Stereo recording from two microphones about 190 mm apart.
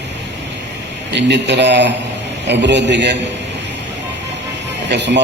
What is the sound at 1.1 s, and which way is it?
A man's voice, 65° right (ahead or behind).